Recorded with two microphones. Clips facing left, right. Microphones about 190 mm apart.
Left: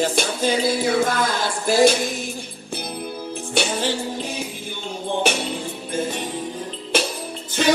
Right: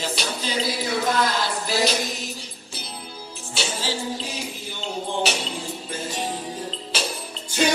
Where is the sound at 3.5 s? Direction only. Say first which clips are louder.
Left 6 dB; 60° left (ahead or behind).